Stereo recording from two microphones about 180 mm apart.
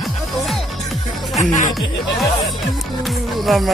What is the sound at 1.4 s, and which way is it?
Speech, 45° left (ahead or behind).